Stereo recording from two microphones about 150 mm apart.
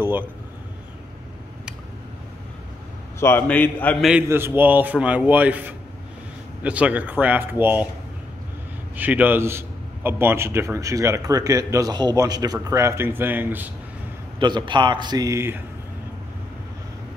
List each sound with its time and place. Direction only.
3.2 s a man's voice: 15° left (ahead or behind)
4.3 s speech: 15° right (ahead or behind)
8.9 s a man's voice: 10° right (ahead or behind)
14.4 s a man's voice: 30° right (ahead or behind)